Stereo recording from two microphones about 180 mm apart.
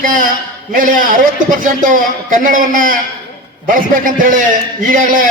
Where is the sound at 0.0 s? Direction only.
50° right (ahead or behind).